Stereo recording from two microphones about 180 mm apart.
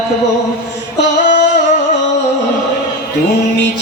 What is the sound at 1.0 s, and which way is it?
Singing, 45° left (ahead or behind).